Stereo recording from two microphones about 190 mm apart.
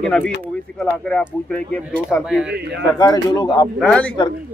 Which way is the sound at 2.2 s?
5° right (ahead or behind).